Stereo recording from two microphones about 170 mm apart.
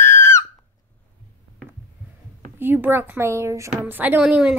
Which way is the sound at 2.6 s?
10° right (ahead or behind).